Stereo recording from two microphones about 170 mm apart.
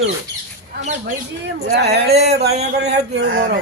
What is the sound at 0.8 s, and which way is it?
Speech, 45° right (ahead or behind).